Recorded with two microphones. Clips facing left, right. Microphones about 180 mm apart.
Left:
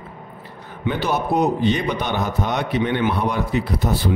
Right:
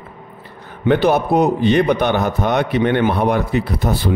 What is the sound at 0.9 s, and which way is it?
A man's voice, 60° right (ahead or behind).